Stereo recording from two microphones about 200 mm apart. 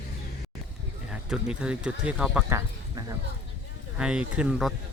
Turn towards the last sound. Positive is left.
turn(degrees=-5)  # may be behind; listen again after turning